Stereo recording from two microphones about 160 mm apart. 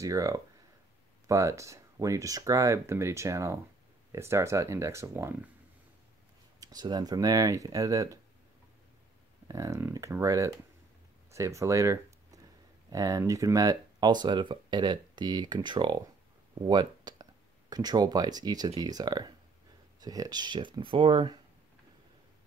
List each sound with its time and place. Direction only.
0.0 s speech: 20° right (ahead or behind)
6.6 s speech: 25° right (ahead or behind)
9.5 s speech: 20° right (ahead or behind)